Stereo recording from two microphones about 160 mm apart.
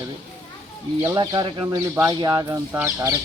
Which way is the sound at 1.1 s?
25° right (ahead or behind).